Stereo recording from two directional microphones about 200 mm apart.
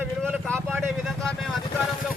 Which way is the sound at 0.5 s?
10° right (ahead or behind).